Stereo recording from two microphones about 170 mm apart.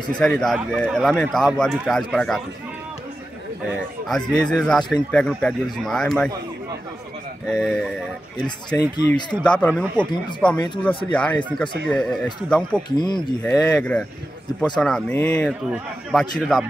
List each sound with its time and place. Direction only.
0.2 s speech: centre (ahead or behind)
4.1 s speech: 5° left (ahead or behind)
7.4 s speech: centre (ahead or behind)
8.7 s speech: 25° left (ahead or behind)
9.4 s speech: 10° left (ahead or behind)
12.9 s speech: 25° left (ahead or behind)
13.7 s speech: 5° left (ahead or behind)